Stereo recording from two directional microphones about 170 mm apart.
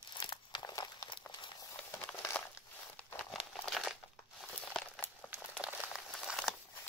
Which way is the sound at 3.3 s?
Centre (ahead or behind).